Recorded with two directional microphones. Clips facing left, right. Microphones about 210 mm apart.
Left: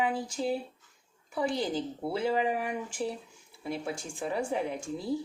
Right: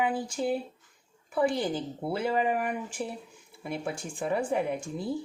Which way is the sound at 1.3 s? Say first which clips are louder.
Right 3 dB; 55° right (ahead or behind).